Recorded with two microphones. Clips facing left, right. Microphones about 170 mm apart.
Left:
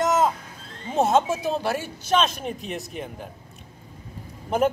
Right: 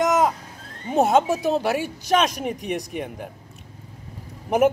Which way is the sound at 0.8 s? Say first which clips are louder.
Right 2 dB; 15° right (ahead or behind).